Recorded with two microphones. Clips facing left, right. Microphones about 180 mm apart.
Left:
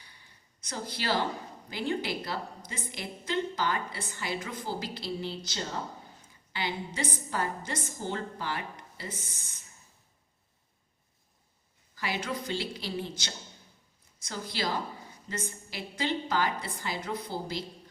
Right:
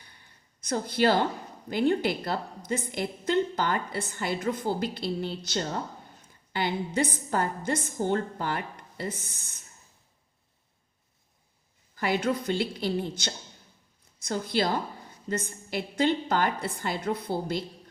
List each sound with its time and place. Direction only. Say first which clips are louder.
0.7 s a woman's voice: right 8 dB; 55° right (ahead or behind)
11.9 s a woman's voice: right 7 dB; 55° right (ahead or behind)